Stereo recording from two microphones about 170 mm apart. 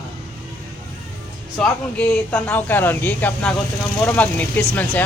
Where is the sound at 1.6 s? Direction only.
5° left (ahead or behind).